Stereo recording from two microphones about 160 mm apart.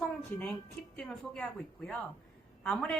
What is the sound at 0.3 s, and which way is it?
Speech, 10° left (ahead or behind).